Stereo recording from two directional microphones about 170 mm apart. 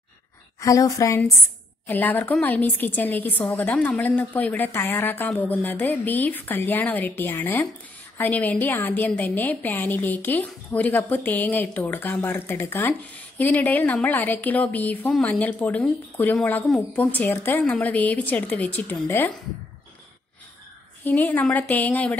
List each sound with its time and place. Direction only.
0.6 s a woman's voice: 20° left (ahead or behind)
21.0 s a woman's voice: 10° left (ahead or behind)